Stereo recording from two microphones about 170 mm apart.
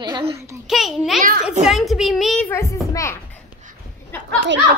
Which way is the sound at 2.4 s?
15° left (ahead or behind).